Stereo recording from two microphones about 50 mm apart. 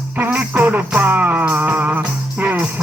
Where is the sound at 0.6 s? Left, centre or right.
Right.